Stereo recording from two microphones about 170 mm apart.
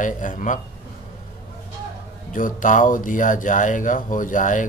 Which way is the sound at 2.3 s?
50° left (ahead or behind).